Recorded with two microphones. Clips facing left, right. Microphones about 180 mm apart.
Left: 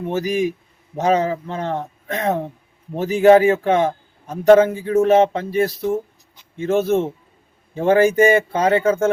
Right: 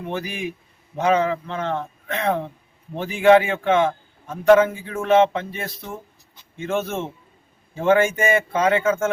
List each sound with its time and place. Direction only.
0.1 s a man's voice: 40° left (ahead or behind)